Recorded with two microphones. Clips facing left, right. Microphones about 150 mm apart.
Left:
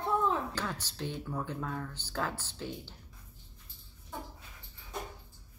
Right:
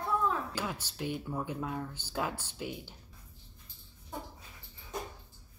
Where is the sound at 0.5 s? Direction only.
10° right (ahead or behind).